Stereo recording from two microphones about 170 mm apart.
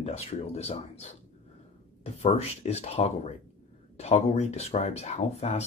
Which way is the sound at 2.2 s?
40° left (ahead or behind).